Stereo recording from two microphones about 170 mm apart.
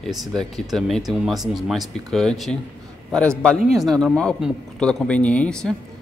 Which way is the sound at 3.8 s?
5° left (ahead or behind).